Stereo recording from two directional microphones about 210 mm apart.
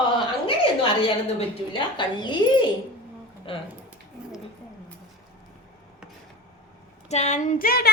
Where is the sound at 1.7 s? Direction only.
20° left (ahead or behind).